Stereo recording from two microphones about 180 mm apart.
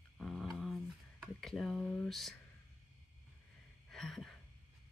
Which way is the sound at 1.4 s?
Centre (ahead or behind).